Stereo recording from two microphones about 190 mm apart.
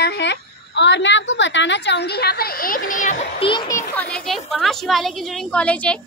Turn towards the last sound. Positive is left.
turn(degrees=5)  # may be behind; listen again after turning